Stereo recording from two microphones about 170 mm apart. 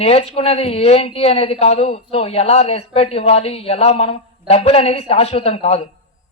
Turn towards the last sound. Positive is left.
turn(degrees=35)  # may be behind; listen again after turning